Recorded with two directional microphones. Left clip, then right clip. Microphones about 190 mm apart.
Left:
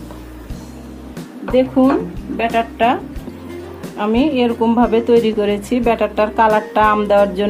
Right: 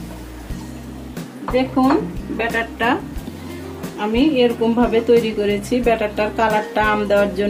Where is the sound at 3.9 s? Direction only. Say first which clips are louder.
Left 1 dB; 45° left (ahead or behind).